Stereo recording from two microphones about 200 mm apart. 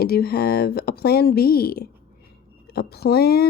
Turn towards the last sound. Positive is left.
turn(degrees=50)  # may be behind; listen again after turning